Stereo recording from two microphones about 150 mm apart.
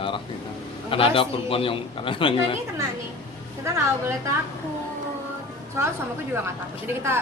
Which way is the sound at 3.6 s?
20° right (ahead or behind).